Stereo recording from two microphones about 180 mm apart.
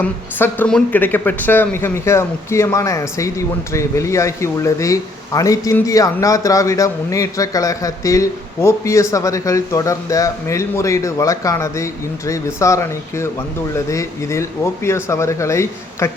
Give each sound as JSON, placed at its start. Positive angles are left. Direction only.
{"t": 0.0, "sound": "speech", "side_deg": 10}